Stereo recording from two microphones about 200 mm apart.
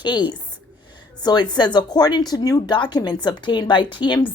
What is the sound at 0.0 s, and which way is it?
Speech, 25° left (ahead or behind).